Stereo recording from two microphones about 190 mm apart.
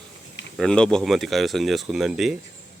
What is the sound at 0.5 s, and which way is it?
Speech, 5° left (ahead or behind).